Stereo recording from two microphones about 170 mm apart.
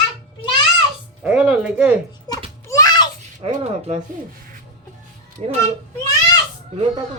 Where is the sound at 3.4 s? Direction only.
40° right (ahead or behind).